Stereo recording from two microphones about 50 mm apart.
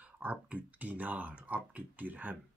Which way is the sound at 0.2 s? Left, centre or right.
Right.